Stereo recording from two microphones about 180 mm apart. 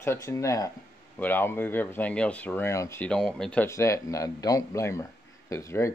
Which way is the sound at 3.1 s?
5° left (ahead or behind).